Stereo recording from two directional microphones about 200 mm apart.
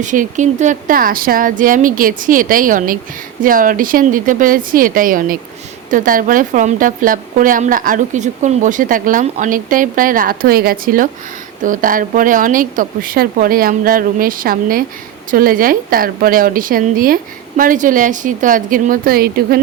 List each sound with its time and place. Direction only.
0.0 s a woman's voice: 40° right (ahead or behind)